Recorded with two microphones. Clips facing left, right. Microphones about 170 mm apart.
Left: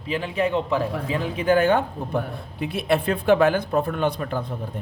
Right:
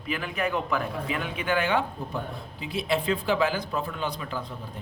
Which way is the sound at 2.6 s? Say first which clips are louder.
Left 5 dB; 60° left (ahead or behind).